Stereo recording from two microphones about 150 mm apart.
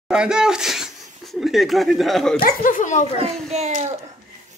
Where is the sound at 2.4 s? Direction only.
70° left (ahead or behind).